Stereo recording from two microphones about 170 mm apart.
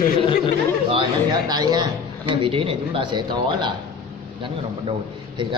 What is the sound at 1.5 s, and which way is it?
A man's voice, 25° right (ahead or behind).